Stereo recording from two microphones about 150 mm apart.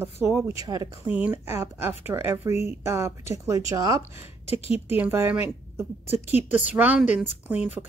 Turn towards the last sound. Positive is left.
turn(degrees=-10)  # may be behind; listen again after turning